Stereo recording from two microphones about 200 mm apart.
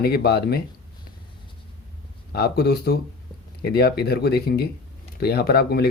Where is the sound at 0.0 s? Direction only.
50° left (ahead or behind).